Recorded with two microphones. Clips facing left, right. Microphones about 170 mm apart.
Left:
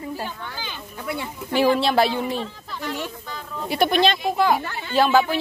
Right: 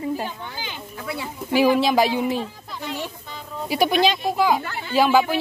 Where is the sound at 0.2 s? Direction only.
15° right (ahead or behind).